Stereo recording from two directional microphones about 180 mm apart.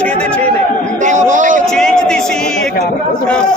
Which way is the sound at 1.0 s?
45° right (ahead or behind).